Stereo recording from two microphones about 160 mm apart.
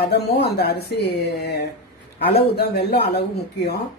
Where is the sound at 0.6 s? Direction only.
80° left.